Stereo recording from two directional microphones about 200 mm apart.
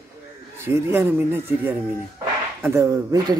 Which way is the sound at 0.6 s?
10° right (ahead or behind).